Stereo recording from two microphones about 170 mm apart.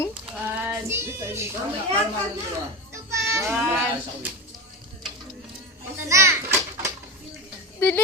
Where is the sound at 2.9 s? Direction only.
15° right (ahead or behind).